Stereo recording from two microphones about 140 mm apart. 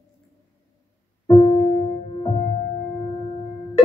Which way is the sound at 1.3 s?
50° left (ahead or behind).